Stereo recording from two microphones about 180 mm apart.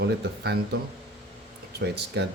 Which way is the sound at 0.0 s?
65° right (ahead or behind).